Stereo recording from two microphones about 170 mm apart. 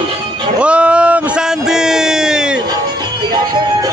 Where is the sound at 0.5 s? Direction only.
5° right (ahead or behind).